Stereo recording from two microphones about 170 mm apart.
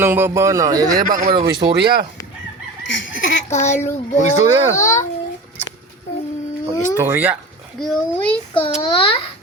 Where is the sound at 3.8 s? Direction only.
45° left (ahead or behind).